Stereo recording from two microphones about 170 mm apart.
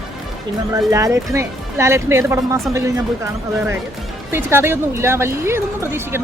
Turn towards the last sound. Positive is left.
turn(degrees=-15)  # may be behind; listen again after turning